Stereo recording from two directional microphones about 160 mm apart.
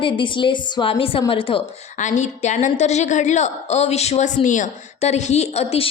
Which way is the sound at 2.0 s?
50° left (ahead or behind).